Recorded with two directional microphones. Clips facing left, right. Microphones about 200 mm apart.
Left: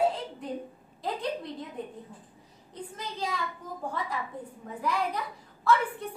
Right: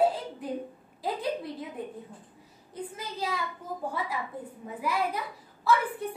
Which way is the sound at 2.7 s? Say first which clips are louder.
Right 2 dB; 5° right (ahead or behind).